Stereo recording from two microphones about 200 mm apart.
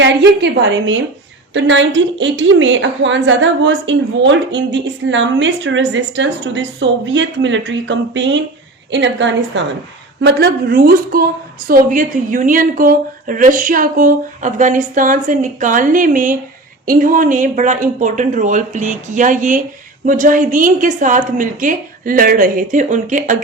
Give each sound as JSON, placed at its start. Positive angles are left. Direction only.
{"t": 0.0, "sound": "a woman's voice", "side_deg": -60}